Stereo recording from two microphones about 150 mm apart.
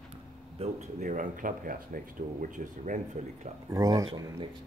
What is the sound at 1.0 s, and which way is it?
A man's voice, 60° right (ahead or behind).